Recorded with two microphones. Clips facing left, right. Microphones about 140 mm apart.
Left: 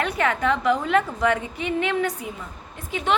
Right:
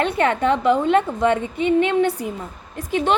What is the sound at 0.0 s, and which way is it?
A woman's voice, 30° right (ahead or behind).